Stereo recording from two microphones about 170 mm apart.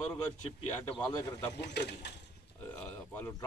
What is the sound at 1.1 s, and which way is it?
Speech, 20° left (ahead or behind).